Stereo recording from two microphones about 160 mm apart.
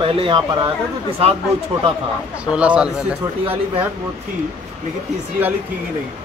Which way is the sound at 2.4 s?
5° right (ahead or behind).